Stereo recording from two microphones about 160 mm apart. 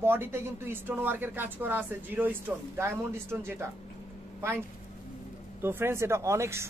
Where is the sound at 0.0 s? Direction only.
15° right (ahead or behind).